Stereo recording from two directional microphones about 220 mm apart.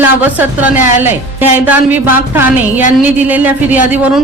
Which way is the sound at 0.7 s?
35° left (ahead or behind).